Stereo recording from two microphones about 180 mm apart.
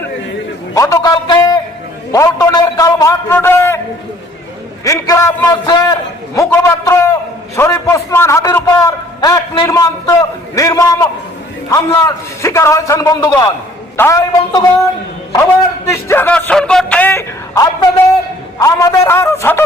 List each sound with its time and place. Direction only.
0.7 s a man's voice: 20° left (ahead or behind)
4.8 s a man's voice: 15° left (ahead or behind)
15.9 s a man's voice: 15° left (ahead or behind)